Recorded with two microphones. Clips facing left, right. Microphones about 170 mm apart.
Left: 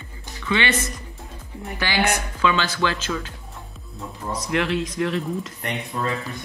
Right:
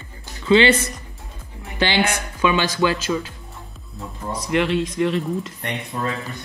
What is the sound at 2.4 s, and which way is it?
Speech, 15° right (ahead or behind).